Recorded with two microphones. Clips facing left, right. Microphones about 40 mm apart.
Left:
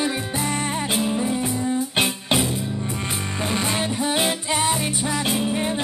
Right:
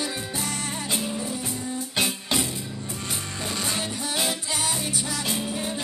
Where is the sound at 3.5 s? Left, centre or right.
Left.